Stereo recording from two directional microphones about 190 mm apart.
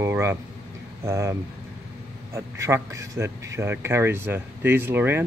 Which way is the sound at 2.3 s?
15° right (ahead or behind).